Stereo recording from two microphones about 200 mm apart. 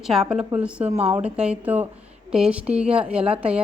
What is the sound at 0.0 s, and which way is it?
Speech, centre (ahead or behind).